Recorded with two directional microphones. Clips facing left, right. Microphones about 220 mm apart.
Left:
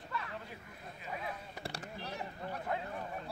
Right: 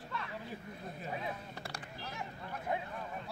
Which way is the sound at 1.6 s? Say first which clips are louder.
Left 2 dB; 35° left (ahead or behind).